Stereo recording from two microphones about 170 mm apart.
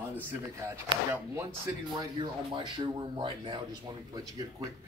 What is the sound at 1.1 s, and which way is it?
Speech, 15° right (ahead or behind).